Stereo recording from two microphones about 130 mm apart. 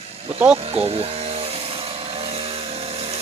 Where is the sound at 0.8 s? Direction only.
50° right (ahead or behind).